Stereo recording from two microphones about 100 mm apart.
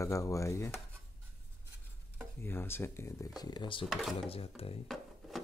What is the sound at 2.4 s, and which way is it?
Speech, 25° left (ahead or behind).